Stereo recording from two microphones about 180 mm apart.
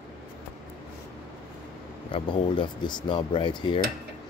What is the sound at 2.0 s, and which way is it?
Speech, 30° left (ahead or behind).